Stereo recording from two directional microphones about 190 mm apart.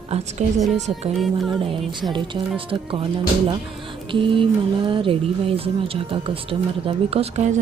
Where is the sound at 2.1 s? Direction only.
25° right (ahead or behind).